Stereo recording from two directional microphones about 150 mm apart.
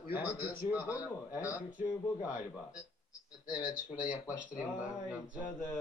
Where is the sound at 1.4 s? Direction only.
10° right (ahead or behind).